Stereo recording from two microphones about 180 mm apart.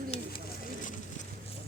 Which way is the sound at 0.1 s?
35° left (ahead or behind).